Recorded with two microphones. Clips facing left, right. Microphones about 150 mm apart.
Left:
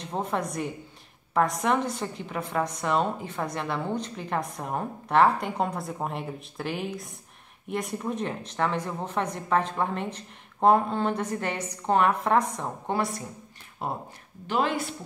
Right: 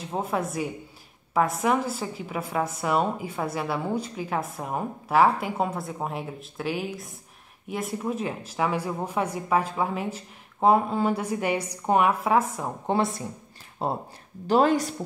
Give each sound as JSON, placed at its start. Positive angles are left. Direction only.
{"t": 0.0, "sound": "a woman's voice", "side_deg": -5}
{"t": 12.8, "sound": "a woman's voice", "side_deg": -25}
{"t": 14.5, "sound": "a woman's voice", "side_deg": -40}